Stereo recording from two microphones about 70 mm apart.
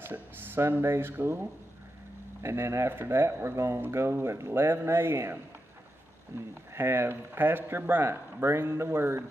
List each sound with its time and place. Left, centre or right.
0.0 s speech: right
2.4 s speech: right
6.7 s speech: right